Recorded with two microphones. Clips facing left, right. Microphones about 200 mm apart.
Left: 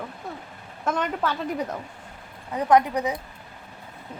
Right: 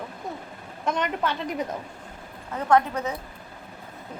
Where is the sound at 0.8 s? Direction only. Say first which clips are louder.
Even; 5° left (ahead or behind).